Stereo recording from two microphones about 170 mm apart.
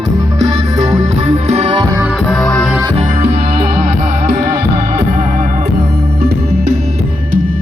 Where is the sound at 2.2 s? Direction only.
5° left (ahead or behind).